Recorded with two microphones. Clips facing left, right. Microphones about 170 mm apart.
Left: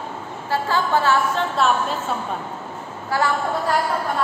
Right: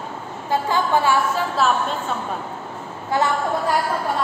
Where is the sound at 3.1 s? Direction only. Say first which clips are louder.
Right 1 dB; 20° right (ahead or behind).